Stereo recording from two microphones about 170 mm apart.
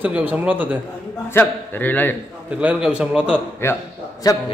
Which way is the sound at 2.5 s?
5° right (ahead or behind).